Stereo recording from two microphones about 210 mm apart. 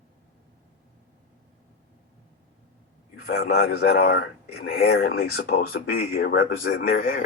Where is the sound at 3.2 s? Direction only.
45° left (ahead or behind).